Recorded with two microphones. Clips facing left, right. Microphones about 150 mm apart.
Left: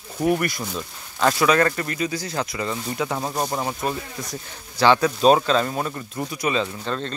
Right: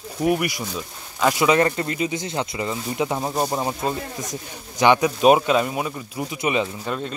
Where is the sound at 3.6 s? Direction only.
20° right (ahead or behind).